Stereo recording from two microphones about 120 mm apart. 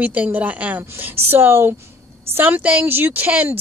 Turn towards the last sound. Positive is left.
turn(degrees=-15)  # may be behind; listen again after turning